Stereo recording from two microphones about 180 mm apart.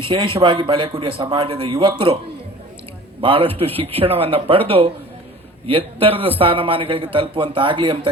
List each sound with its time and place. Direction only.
0.0 s a man's voice: 30° right (ahead or behind)
3.2 s a man's voice: 30° right (ahead or behind)